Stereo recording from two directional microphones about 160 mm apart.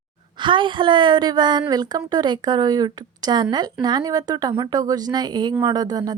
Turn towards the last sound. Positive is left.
turn(degrees=-25)  # may be behind; listen again after turning